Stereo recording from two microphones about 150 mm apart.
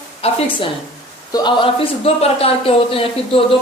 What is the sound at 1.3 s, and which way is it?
A woman's voice, 30° left (ahead or behind).